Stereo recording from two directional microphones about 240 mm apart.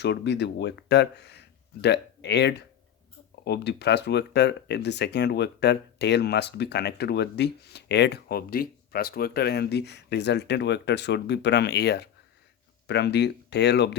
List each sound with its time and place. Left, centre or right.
0.0 s speech: left